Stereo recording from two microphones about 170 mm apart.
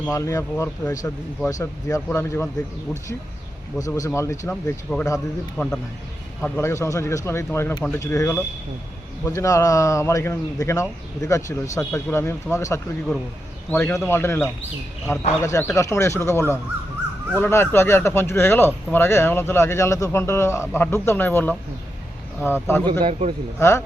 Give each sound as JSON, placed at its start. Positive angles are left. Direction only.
{"t": 0.0, "sound": "a man's voice", "side_deg": 15}
{"t": 3.8, "sound": "a man's voice", "side_deg": 20}
{"t": 22.9, "sound": "a man's voice", "side_deg": -30}
{"t": 23.6, "sound": "speech", "side_deg": 15}